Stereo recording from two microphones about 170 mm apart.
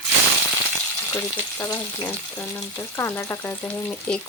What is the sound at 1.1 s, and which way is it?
Frying, 15° left (ahead or behind).